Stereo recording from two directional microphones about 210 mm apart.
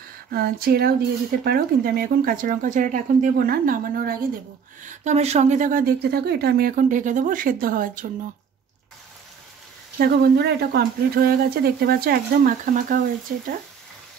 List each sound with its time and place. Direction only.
0.3 s speech: 45° right (ahead or behind)
4.8 s a woman's voice: 35° right (ahead or behind)
9.9 s speech: 50° right (ahead or behind)